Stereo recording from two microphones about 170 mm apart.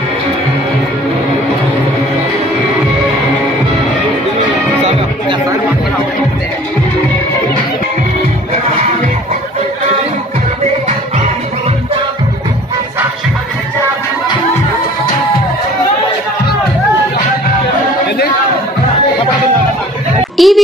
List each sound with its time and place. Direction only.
20.3 s music: centre (ahead or behind)